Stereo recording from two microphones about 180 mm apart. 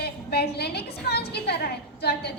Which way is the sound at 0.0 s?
60° left (ahead or behind).